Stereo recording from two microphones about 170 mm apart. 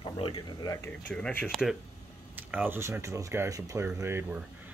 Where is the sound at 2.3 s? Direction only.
10° right (ahead or behind).